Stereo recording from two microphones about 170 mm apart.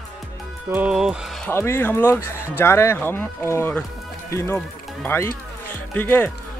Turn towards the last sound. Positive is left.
turn(degrees=10)  # may be behind; listen again after turning